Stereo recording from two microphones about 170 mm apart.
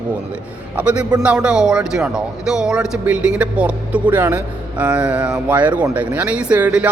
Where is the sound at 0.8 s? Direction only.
5° right (ahead or behind).